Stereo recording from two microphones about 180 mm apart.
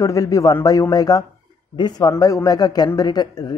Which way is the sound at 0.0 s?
15° left (ahead or behind).